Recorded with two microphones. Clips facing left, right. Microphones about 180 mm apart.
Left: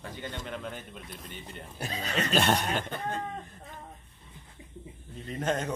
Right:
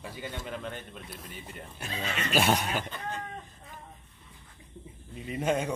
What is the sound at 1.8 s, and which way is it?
Speech, 40° left (ahead or behind).